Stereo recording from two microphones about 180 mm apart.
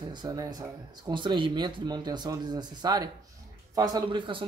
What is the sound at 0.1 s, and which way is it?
Speech, 20° right (ahead or behind).